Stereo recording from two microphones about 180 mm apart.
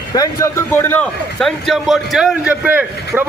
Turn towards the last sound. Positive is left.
turn(degrees=-10)  # may be behind; listen again after turning